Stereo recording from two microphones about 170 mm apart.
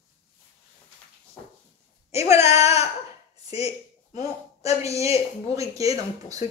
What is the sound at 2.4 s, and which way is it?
Speech, 40° left (ahead or behind).